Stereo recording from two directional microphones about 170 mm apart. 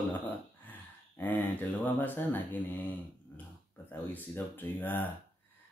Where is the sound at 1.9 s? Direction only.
10° left (ahead or behind).